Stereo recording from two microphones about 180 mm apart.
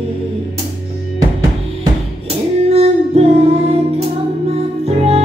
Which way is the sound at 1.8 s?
35° right (ahead or behind).